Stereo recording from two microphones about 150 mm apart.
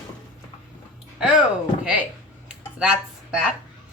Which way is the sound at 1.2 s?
5° right (ahead or behind).